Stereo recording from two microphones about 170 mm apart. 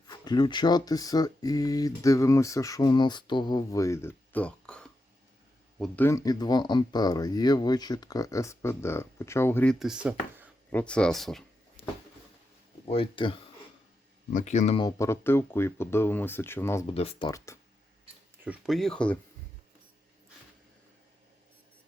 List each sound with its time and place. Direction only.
0.1 s speech: 25° left (ahead or behind)
9.7 s speech: 5° right (ahead or behind)
10.7 s speech: 10° left (ahead or behind)
12.9 s speech: 30° left (ahead or behind)
14.3 s speech: 45° left (ahead or behind)
14.8 s speech: 20° left (ahead or behind)
16.9 s speech: 35° left (ahead or behind)
17.2 s speech: 15° left (ahead or behind)
18.4 s speech: centre (ahead or behind)